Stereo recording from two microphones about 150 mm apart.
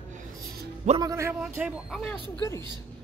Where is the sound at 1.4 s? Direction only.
5° right (ahead or behind).